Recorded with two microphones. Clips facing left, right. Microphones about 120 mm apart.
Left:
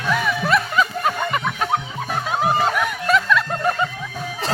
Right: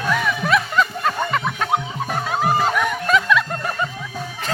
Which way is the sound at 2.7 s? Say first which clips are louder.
Right 1 dB; centre (ahead or behind).